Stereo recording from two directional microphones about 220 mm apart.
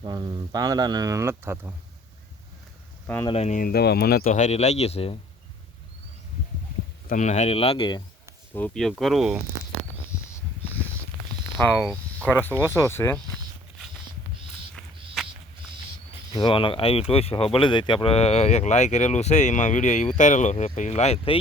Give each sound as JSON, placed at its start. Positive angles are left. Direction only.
{"t": 0.0, "sound": "speech", "side_deg": -20}
{"t": 3.2, "sound": "speech", "side_deg": 30}
{"t": 7.1, "sound": "speech", "side_deg": 35}
{"t": 8.5, "sound": "speech", "side_deg": 5}
{"t": 11.5, "sound": "speech", "side_deg": 5}
{"t": 14.8, "sound": "a sound", "side_deg": 0}
{"t": 16.3, "sound": "speech", "side_deg": 20}